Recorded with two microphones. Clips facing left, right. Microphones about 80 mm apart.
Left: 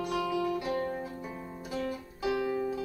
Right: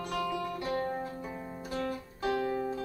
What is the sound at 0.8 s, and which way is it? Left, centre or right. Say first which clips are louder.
Music: even; right.